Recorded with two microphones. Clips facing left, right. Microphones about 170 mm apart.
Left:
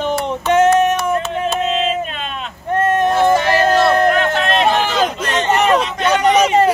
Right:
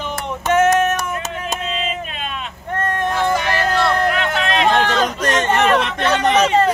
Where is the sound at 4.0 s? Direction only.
45° left (ahead or behind).